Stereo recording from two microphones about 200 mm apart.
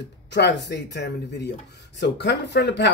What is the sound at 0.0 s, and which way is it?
Speech, 60° left (ahead or behind).